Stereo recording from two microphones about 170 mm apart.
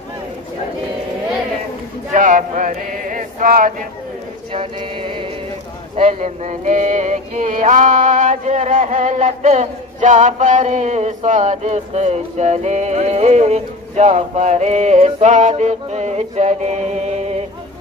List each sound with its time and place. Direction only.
2.0 s a sound: 50° right (ahead or behind)
4.5 s mantra: 30° right (ahead or behind)
5.9 s music: 40° right (ahead or behind)